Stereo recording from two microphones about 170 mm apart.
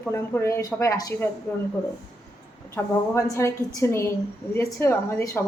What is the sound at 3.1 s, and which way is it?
A woman's voice, 15° left (ahead or behind).